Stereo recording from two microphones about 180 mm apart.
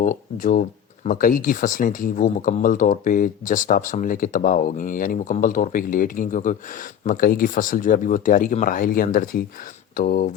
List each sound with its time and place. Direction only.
0.0 s speech: 50° left (ahead or behind)